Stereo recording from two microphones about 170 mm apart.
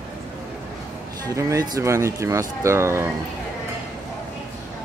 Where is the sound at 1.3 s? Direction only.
20° right (ahead or behind).